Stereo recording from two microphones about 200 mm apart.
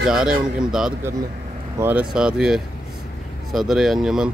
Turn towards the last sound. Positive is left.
turn(degrees=0)  # may be behind; listen again after turning